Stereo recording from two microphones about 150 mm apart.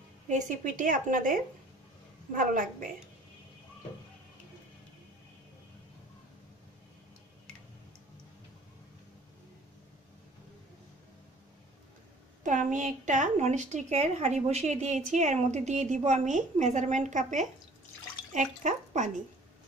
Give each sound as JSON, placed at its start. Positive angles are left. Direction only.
{"t": 0.3, "sound": "a woman's voice", "side_deg": -55}
{"t": 12.4, "sound": "a woman's voice", "side_deg": -55}